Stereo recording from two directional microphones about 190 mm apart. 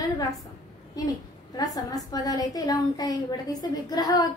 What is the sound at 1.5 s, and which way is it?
A woman's voice, 20° left (ahead or behind).